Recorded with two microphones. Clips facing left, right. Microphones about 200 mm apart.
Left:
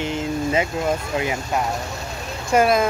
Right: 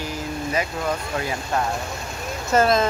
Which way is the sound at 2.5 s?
10° left (ahead or behind).